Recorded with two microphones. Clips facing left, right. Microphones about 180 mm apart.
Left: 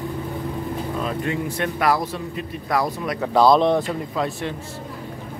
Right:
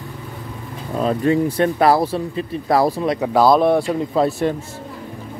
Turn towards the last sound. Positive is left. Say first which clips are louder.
# right 8 dB
turn(degrees=-40)  # may be behind; listen again after turning